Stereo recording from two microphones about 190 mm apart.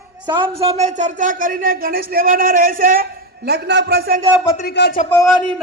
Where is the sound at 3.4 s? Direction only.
60° right (ahead or behind).